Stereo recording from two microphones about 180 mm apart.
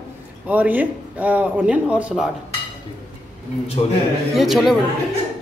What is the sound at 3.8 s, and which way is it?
Speech, 30° left (ahead or behind).